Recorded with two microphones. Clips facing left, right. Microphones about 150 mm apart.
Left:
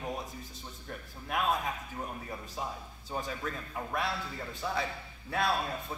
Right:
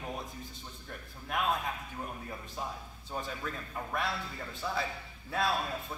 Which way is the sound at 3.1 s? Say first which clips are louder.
Left 2 dB; centre (ahead or behind).